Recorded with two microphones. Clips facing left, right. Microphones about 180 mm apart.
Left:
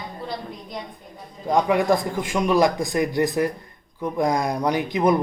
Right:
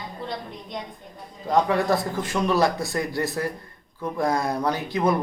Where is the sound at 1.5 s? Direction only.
15° left (ahead or behind).